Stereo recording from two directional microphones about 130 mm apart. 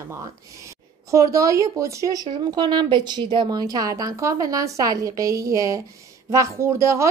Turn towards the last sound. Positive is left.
turn(degrees=-20)  # may be behind; listen again after turning